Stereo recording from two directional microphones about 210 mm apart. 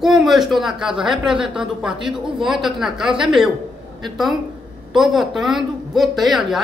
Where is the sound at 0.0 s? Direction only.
Centre (ahead or behind).